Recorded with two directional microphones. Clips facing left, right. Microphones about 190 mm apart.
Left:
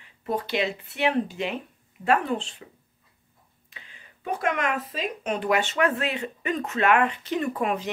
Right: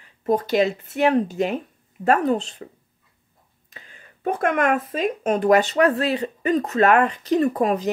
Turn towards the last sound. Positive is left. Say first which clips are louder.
# right 6 dB
turn(degrees=-40)  # may be behind; listen again after turning